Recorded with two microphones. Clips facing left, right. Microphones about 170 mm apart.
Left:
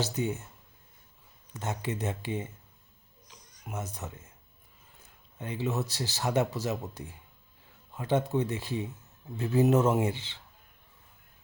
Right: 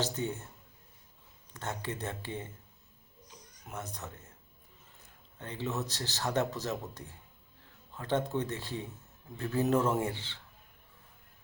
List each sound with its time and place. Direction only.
0.0 s speech: 10° left (ahead or behind)
1.5 s speech: 15° left (ahead or behind)
3.3 s a sound: 90° left
3.7 s speech: 10° left (ahead or behind)
5.4 s speech: 15° left (ahead or behind)